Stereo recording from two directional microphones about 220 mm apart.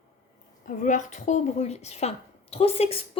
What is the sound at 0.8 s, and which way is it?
A woman's voice, 35° left (ahead or behind).